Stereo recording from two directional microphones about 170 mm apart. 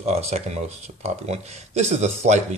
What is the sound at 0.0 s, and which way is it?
Speech, 40° right (ahead or behind).